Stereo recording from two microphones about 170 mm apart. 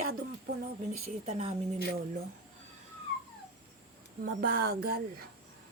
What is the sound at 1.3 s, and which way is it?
Speech, 40° right (ahead or behind).